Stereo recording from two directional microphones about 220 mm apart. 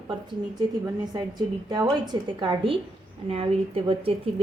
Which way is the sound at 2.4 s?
20° right (ahead or behind).